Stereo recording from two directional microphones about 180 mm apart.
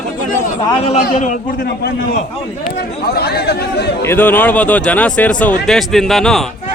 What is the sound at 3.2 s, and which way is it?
Speech, 65° left (ahead or behind).